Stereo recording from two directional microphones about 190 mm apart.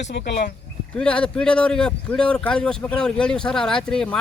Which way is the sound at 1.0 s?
5° left (ahead or behind).